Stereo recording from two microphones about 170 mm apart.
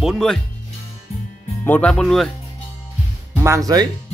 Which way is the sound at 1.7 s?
5° left (ahead or behind).